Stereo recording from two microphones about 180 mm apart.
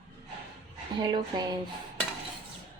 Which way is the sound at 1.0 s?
25° right (ahead or behind).